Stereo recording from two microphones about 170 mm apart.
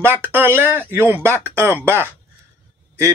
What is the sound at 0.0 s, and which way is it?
Speech, 10° right (ahead or behind).